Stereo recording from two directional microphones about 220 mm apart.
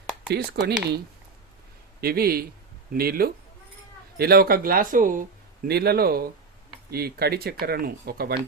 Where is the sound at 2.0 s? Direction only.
45° right (ahead or behind).